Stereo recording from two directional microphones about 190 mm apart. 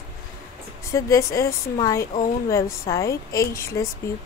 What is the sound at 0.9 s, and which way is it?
A woman's voice, 15° left (ahead or behind).